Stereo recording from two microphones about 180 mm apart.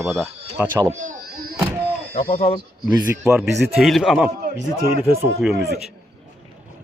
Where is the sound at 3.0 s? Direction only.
5° right (ahead or behind).